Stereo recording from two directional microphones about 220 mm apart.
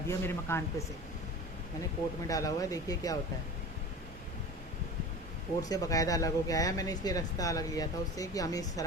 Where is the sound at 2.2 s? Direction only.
15° left (ahead or behind).